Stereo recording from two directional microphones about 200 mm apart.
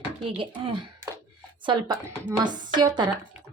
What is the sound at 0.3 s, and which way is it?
Speech, 25° right (ahead or behind).